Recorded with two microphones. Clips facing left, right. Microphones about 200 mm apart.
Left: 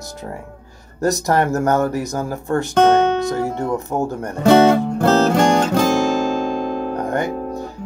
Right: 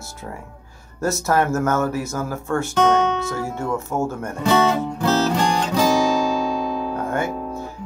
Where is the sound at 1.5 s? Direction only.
35° left (ahead or behind).